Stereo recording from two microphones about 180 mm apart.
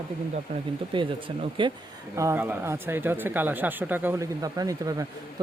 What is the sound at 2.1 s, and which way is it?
Speech, 15° right (ahead or behind).